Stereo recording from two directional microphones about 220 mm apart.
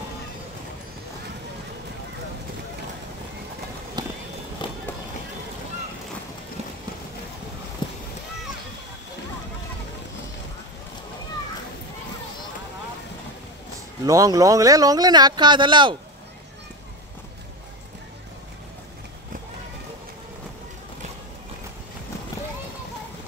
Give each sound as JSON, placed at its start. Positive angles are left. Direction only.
{"t": 4.0, "sound": "run", "side_deg": -20}
{"t": 7.8, "sound": "a sound", "side_deg": 20}
{"t": 14.0, "sound": "speech", "side_deg": -15}